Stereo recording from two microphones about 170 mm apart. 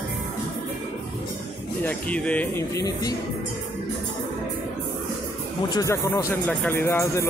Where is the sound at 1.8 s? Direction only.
10° left (ahead or behind).